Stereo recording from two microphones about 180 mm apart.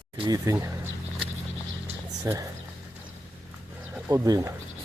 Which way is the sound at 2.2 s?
20° right (ahead or behind).